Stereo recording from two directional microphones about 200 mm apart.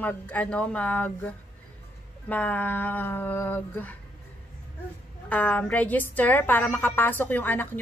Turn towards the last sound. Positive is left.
turn(degrees=10)  # may be behind; listen again after turning